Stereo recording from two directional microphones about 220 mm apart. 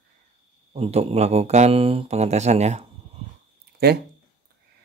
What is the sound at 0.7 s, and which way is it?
Speech, 30° right (ahead or behind).